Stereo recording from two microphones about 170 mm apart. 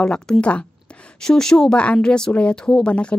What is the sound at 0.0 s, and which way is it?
Speech, 5° left (ahead or behind).